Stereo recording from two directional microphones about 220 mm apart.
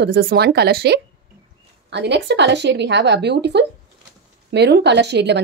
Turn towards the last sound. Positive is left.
turn(degrees=-50)  # may be behind; listen again after turning